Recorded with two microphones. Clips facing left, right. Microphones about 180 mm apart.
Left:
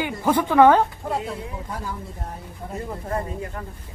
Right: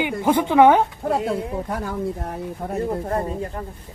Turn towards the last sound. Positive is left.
turn(degrees=-35)  # may be behind; listen again after turning